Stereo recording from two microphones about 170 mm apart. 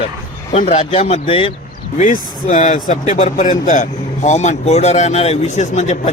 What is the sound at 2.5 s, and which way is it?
Speech, 50° left (ahead or behind).